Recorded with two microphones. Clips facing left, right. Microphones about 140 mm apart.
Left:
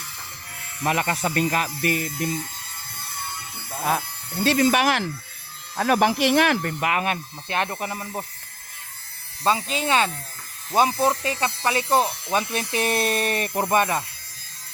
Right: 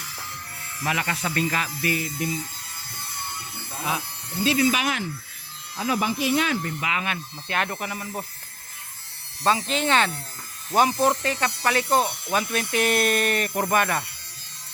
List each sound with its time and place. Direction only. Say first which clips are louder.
0.8 s speech: left 4 dB; 45° left (ahead or behind)
3.8 s speech: left 5 dB; 50° left (ahead or behind)
7.4 s speech: left 2 dB; 25° left (ahead or behind)
9.6 s speech: even; 10° left (ahead or behind)
11.2 s speech: even; 20° left (ahead or behind)
11.9 s speech: left 2 dB; 5° left (ahead or behind)
12.3 s speech: even; 25° left (ahead or behind)